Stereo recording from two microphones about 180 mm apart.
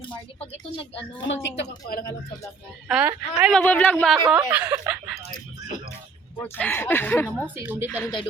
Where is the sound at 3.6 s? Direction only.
10° left (ahead or behind).